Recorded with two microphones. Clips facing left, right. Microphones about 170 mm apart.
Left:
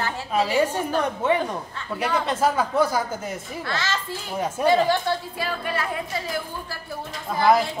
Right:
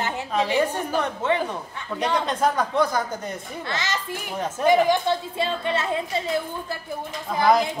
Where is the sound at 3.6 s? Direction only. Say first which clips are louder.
Even; 20° right (ahead or behind).